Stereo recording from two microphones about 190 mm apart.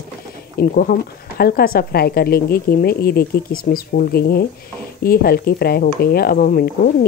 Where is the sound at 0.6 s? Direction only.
50° left (ahead or behind).